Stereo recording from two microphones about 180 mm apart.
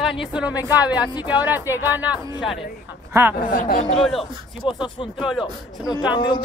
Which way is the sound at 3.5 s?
45° left (ahead or behind).